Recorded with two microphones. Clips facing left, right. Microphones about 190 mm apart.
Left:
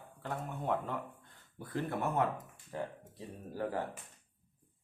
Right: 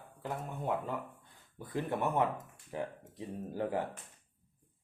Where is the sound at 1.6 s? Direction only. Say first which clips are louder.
Right 2 dB; 15° right (ahead or behind).